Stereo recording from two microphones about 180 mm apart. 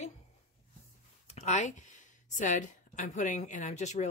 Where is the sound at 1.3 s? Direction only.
40° left (ahead or behind).